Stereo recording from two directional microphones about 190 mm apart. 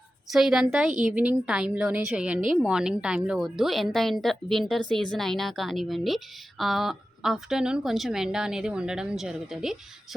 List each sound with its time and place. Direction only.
0.3 s speech: centre (ahead or behind)